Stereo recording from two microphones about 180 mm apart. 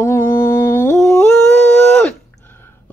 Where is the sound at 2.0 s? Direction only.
10° left (ahead or behind).